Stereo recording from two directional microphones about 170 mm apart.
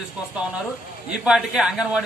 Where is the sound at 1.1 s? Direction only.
5° right (ahead or behind).